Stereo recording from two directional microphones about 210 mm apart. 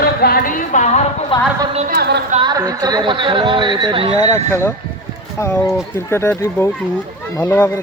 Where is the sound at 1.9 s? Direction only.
50° right (ahead or behind).